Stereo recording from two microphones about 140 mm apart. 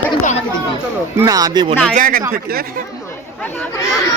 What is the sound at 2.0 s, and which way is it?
Speech, 70° right (ahead or behind).